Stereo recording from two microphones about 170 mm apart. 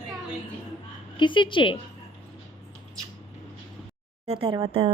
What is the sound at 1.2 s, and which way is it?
Speech, 30° left (ahead or behind).